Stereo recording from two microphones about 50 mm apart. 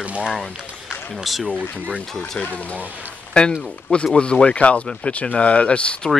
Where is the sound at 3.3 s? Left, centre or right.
Centre.